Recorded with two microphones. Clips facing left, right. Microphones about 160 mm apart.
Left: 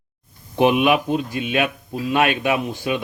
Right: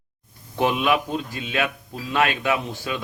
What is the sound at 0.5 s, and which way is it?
A man's voice, 15° left (ahead or behind).